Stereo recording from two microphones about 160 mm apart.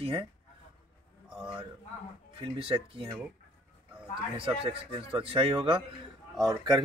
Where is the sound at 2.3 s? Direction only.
35° right (ahead or behind).